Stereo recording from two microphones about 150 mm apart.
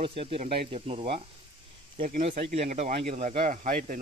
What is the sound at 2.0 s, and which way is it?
Speech, 55° right (ahead or behind).